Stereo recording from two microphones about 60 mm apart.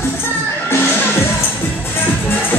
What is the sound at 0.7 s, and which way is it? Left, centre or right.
Music, left.